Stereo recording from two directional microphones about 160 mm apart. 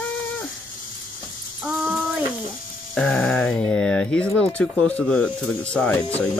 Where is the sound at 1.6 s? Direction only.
5° right (ahead or behind).